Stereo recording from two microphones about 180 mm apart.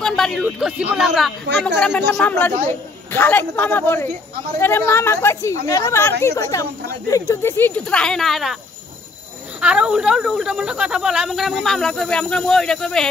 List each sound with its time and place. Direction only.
0.0 s a woman's voice: 5° left (ahead or behind)
9.6 s speech: 5° right (ahead or behind)